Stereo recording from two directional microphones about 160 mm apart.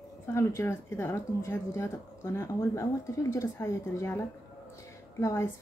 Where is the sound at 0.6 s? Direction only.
15° left (ahead or behind).